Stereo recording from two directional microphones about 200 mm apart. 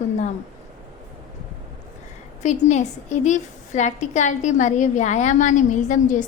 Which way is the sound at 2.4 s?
35° left (ahead or behind).